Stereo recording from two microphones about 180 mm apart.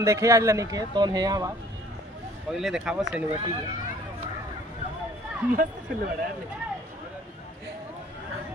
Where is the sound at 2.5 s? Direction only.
Centre (ahead or behind).